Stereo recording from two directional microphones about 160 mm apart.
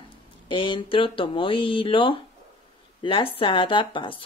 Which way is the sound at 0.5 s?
30° left (ahead or behind).